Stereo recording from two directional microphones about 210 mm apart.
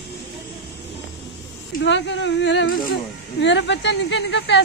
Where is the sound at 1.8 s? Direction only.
60° left (ahead or behind).